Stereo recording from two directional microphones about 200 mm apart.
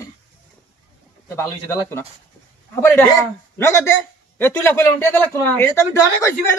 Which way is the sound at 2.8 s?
10° left (ahead or behind).